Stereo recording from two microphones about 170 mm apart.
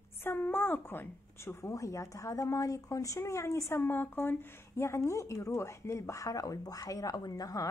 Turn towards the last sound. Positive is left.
turn(degrees=20)  # may be behind; listen again after turning